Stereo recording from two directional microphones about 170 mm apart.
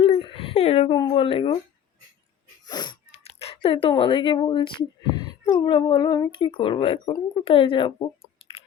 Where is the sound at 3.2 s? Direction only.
35° left (ahead or behind).